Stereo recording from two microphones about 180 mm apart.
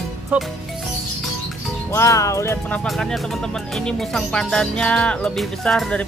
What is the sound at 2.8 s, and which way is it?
Speech, centre (ahead or behind).